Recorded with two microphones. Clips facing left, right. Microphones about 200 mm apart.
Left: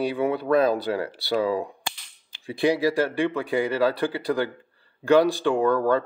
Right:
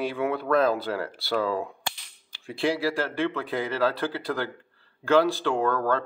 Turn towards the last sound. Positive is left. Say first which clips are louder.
# left 4 dB
turn(degrees=15)  # may be behind; listen again after turning